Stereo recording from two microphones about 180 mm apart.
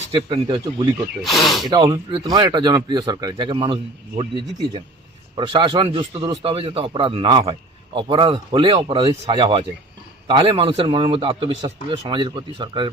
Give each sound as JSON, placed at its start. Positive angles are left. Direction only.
{"t": 0.3, "sound": "a man's voice", "side_deg": -25}
{"t": 1.2, "sound": "speech", "side_deg": 0}
{"t": 1.7, "sound": "a man's voice", "side_deg": -25}
{"t": 5.4, "sound": "a man's voice", "side_deg": -25}